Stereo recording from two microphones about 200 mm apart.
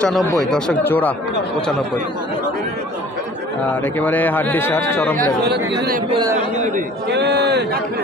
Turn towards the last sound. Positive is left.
turn(degrees=-55)  # may be behind; listen again after turning